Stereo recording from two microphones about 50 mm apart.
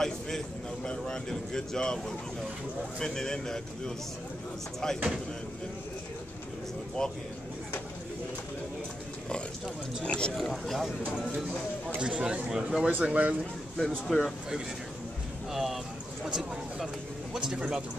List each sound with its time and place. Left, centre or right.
0.8 s speech: centre
7.0 s speech: centre
10.0 s speech: left
10.3 s speech: centre
12.0 s a man's voice: centre
12.8 s speech: right
13.7 s speech: centre
15.5 s a sound: centre
16.3 s a man's voice: centre